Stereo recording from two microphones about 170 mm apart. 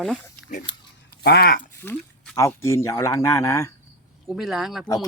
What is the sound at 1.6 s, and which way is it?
Speech, 10° left (ahead or behind).